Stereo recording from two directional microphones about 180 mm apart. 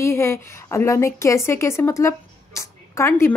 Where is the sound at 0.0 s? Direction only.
15° left (ahead or behind).